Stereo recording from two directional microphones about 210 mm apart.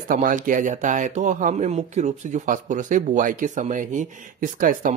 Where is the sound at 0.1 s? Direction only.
40° right (ahead or behind).